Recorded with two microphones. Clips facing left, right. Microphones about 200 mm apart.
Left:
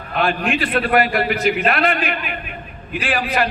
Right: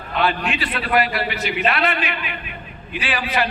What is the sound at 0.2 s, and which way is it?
A man's voice, 50° left (ahead or behind).